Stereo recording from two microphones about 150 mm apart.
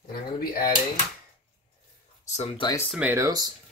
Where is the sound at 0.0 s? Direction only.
85° left.